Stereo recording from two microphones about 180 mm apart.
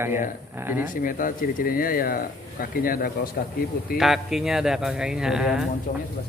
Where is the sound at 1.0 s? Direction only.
50° left (ahead or behind).